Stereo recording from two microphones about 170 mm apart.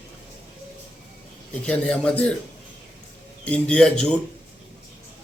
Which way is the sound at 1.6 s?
5° left (ahead or behind).